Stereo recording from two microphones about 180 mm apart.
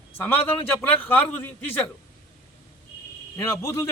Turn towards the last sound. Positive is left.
turn(degrees=15)  # may be behind; listen again after turning